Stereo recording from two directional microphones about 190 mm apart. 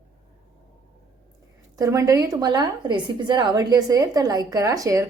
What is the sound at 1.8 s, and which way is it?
A woman's voice, 15° right (ahead or behind).